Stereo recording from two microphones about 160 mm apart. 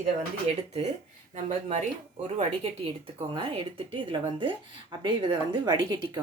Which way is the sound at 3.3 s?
35° right (ahead or behind).